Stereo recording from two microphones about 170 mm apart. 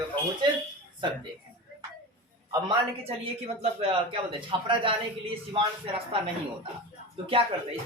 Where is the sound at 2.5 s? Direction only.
30° right (ahead or behind).